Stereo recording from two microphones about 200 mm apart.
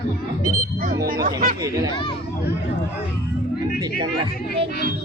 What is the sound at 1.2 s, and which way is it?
Speech, 40° right (ahead or behind).